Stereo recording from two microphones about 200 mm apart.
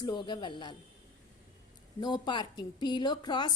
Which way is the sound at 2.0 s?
20° left (ahead or behind).